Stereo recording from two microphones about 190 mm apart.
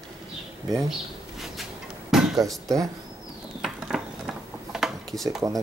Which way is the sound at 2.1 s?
Centre (ahead or behind).